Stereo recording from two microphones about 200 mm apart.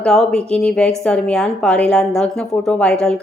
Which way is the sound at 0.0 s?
5° left (ahead or behind).